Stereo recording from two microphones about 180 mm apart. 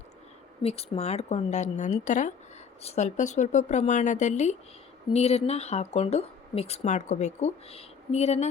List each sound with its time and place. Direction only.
0.6 s speech: 35° left (ahead or behind)